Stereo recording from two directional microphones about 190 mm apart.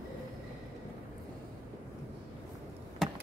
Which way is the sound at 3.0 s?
Centre (ahead or behind).